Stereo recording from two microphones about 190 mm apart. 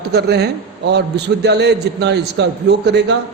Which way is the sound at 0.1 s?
60° right (ahead or behind).